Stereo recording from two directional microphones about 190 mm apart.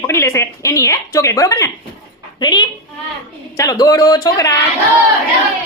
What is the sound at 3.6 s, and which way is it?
Speech, 20° left (ahead or behind).